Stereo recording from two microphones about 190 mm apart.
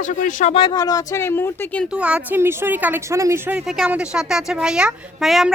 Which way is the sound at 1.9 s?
5° right (ahead or behind).